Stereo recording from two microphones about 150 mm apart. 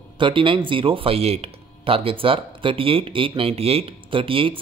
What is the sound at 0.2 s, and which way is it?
Speech, 35° right (ahead or behind).